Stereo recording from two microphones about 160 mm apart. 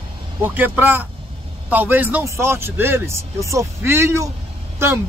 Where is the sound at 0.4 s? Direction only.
10° right (ahead or behind).